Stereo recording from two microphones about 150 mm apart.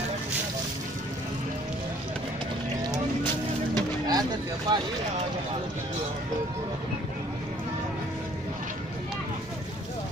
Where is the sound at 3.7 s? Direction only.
25° right (ahead or behind).